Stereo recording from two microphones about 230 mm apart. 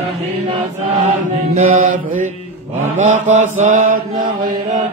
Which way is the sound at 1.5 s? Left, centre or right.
Right.